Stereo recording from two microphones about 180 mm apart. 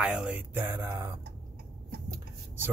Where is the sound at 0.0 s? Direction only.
5° right (ahead or behind).